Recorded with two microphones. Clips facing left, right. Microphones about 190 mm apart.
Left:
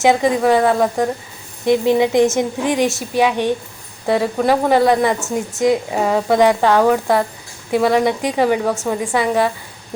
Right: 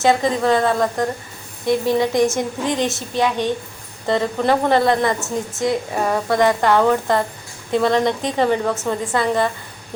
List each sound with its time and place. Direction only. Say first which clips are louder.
0.0 s a woman's voice: left 3 dB; 15° left (ahead or behind)